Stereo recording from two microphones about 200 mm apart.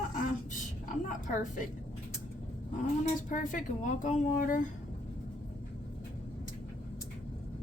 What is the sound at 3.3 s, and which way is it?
A woman's voice, 40° left (ahead or behind).